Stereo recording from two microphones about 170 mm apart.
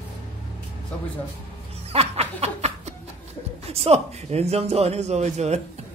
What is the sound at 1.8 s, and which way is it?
Music, 35° right (ahead or behind).